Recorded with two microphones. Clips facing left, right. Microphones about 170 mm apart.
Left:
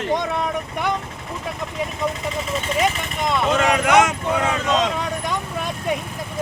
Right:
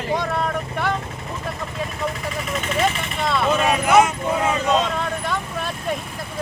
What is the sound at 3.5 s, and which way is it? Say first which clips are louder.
Speech: even; 90° left.